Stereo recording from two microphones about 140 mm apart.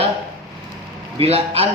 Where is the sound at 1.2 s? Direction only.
45° right (ahead or behind).